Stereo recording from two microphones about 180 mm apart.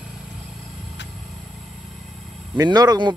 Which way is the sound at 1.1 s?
Centre (ahead or behind).